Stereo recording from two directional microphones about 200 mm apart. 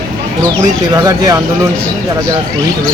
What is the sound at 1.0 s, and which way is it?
Speech, 20° right (ahead or behind).